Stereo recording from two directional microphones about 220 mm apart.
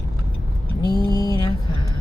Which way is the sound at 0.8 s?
15° left (ahead or behind).